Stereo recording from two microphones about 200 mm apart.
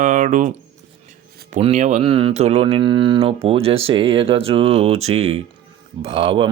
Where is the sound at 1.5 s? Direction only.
35° right (ahead or behind).